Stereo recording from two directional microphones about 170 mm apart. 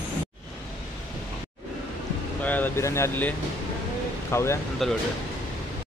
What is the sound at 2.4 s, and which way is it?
Speech, 10° left (ahead or behind).